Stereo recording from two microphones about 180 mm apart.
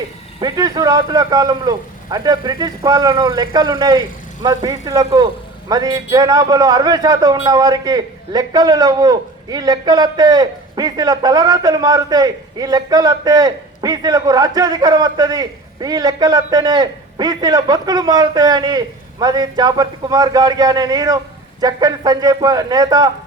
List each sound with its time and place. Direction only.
0.3 s a man's voice: 20° right (ahead or behind)